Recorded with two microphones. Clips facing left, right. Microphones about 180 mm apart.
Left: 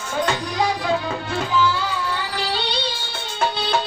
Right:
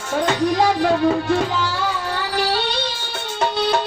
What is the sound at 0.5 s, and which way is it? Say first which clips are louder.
Music: right 3 dB; 65° right (ahead or behind).